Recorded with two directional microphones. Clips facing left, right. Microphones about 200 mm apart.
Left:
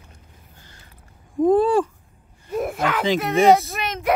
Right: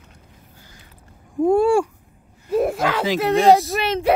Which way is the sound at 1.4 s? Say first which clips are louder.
Right 1 dB; 10° right (ahead or behind).